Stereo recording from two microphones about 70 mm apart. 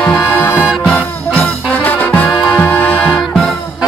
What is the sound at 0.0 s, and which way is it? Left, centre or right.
Music, centre.